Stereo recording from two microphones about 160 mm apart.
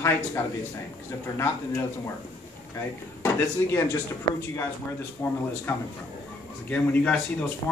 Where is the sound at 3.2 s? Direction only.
15° left (ahead or behind).